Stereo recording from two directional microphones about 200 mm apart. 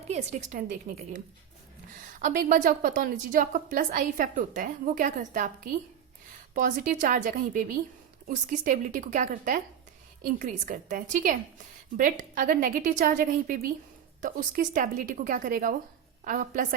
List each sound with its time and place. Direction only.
0.1 s a woman's voice: 35° right (ahead or behind)
6.5 s a woman's voice: 45° right (ahead or behind)